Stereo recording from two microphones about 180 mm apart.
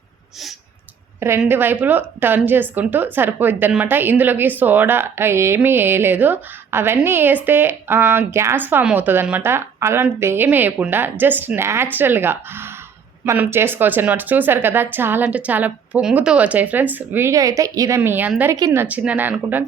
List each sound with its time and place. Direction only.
1.2 s a woman's voice: 15° right (ahead or behind)